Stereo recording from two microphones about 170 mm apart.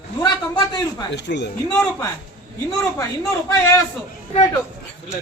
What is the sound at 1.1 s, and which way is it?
Speech, 90° left.